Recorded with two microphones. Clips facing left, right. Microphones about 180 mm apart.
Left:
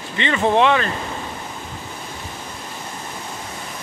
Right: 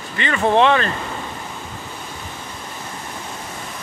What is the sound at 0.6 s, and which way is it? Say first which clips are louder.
Speech: right 2 dB; 10° left (ahead or behind).